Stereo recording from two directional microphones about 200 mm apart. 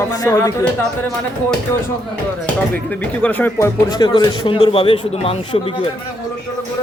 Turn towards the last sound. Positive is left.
turn(degrees=25)  # may be behind; listen again after turning